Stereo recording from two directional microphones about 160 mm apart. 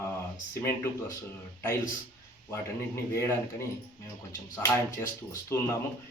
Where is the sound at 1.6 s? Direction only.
15° left (ahead or behind).